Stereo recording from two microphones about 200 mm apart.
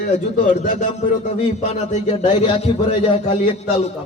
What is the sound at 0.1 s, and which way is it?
A man's voice, 35° left (ahead or behind).